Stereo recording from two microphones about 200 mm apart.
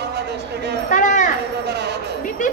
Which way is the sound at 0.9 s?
40° left (ahead or behind).